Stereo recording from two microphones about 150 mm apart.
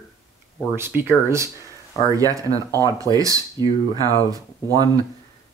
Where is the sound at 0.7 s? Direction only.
15° right (ahead or behind).